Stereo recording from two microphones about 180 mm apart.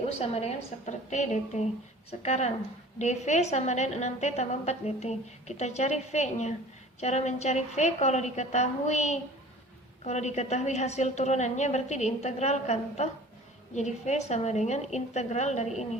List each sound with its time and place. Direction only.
0.2 s a woman's voice: 35° left (ahead or behind)